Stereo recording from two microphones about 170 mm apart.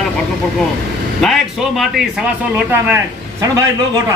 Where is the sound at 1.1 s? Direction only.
Centre (ahead or behind).